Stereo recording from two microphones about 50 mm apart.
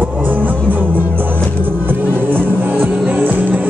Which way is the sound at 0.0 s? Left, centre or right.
Right.